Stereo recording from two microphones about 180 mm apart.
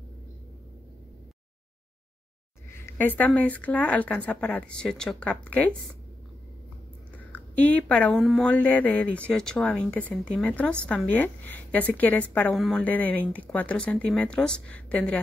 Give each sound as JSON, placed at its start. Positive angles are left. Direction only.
{"t": 2.8, "sound": "a woman's voice", "side_deg": 10}
{"t": 7.3, "sound": "a woman's voice", "side_deg": 10}